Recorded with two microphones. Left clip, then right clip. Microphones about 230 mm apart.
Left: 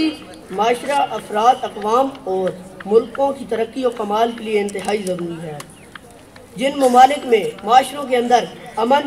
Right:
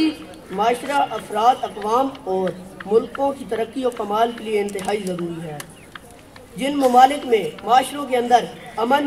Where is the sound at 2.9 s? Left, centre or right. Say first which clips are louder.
Left 3 dB; left.